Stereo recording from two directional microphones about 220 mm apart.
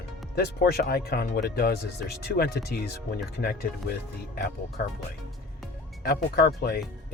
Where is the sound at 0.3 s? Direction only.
45° left (ahead or behind).